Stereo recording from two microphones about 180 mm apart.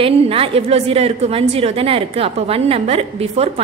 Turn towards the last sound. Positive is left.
turn(degrees=-35)  # may be behind; listen again after turning